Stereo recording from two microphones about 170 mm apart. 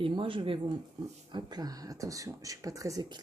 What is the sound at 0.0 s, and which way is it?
Speech, 30° right (ahead or behind).